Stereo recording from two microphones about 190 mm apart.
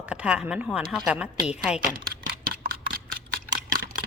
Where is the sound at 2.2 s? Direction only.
45° right (ahead or behind).